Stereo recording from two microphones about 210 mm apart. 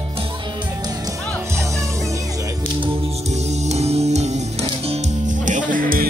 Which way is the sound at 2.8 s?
30° right (ahead or behind).